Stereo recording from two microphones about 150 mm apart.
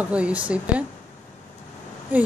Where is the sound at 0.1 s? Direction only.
10° right (ahead or behind).